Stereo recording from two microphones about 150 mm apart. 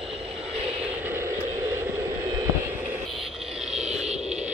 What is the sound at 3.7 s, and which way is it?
Vehicle, 5° right (ahead or behind).